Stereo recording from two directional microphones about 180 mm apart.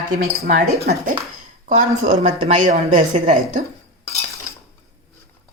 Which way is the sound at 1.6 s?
40° right (ahead or behind).